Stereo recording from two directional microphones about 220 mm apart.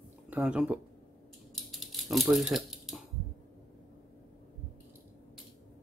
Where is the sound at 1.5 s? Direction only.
Centre (ahead or behind).